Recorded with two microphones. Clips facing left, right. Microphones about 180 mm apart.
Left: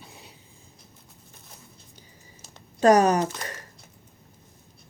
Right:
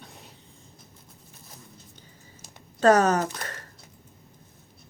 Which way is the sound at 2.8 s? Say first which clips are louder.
Left 1 dB; 15° left (ahead or behind).